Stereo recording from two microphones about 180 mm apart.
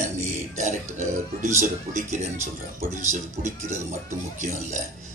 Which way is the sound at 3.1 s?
40° right (ahead or behind).